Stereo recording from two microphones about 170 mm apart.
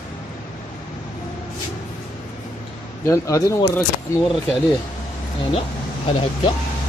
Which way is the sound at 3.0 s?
20° left (ahead or behind).